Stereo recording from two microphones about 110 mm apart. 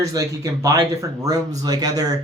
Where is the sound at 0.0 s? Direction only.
30° right (ahead or behind).